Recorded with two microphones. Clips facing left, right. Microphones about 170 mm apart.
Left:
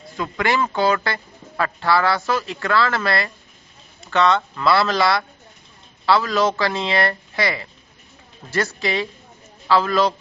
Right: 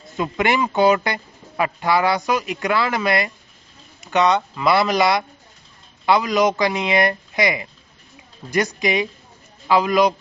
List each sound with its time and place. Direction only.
0.2 s speech: 20° right (ahead or behind)